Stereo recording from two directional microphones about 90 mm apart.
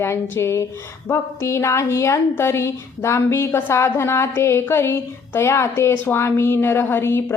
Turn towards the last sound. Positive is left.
turn(degrees=25)  # may be behind; listen again after turning